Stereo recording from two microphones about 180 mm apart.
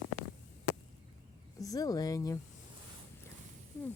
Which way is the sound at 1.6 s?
20° left (ahead or behind).